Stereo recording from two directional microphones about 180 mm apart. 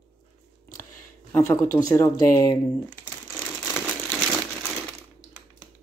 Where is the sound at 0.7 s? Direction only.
50° left (ahead or behind).